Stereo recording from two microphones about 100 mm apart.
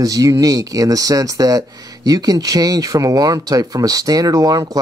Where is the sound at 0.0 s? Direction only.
35° right (ahead or behind).